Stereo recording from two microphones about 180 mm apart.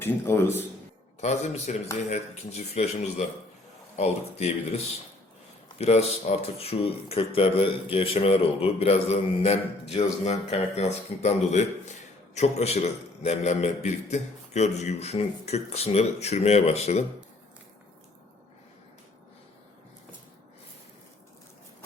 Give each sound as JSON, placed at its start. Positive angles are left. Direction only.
{"t": 0.0, "sound": "a man's voice", "side_deg": 15}
{"t": 1.2, "sound": "speech", "side_deg": 40}
{"t": 5.8, "sound": "speech", "side_deg": 35}